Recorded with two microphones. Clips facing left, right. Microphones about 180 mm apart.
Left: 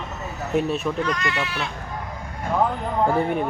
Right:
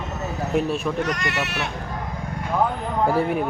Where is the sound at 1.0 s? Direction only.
70° right (ahead or behind).